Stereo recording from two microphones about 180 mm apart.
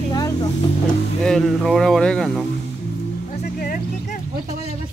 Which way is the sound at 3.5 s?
50° left (ahead or behind).